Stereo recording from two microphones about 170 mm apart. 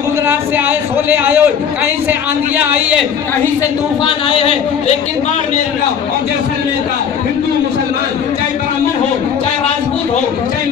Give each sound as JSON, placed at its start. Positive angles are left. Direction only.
{"t": 0.3, "sound": "speech", "side_deg": -10}
{"t": 2.5, "sound": "speech", "side_deg": -10}
{"t": 4.0, "sound": "speech", "side_deg": 30}